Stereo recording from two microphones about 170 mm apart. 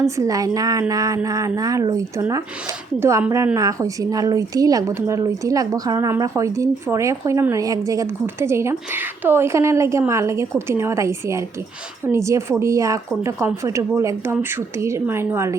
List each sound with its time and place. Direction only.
0.2 s a woman's voice: 20° right (ahead or behind)